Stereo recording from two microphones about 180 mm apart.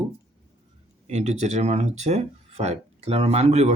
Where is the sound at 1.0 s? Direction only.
40° right (ahead or behind).